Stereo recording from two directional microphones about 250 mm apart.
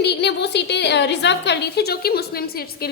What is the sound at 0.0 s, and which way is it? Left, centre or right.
A woman's voice, left.